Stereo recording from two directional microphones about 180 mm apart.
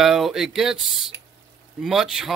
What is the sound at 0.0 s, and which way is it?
Speech, centre (ahead or behind).